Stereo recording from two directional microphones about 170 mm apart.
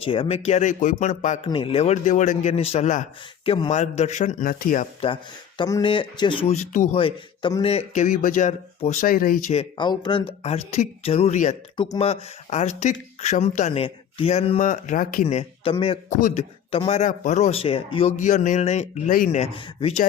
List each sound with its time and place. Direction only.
0.0 s speech: 30° left (ahead or behind)
1.5 s speech: 30° left (ahead or behind); by 4.9 s 50° left (ahead or behind)
4.9 s speech: 30° left (ahead or behind)
7.0 s speech: 30° left (ahead or behind); by 9.4 s 55° left (ahead or behind)
9.5 s speech: 30° left (ahead or behind)
11.8 s speech: 35° left (ahead or behind)
14.6 s speech: 50° left (ahead or behind)
15.4 s speech: 30° left (ahead or behind)
16.0 s speech: 45° left (ahead or behind)
18.2 s speech: 45° left (ahead or behind)
19.4 s speech: 35° left (ahead or behind)